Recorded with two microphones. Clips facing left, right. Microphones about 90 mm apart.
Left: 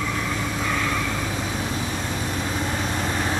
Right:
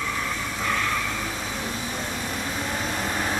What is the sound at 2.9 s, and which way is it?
Vehicle, centre (ahead or behind).